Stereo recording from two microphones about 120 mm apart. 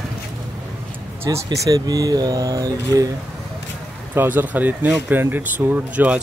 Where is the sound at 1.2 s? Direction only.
30° right (ahead or behind).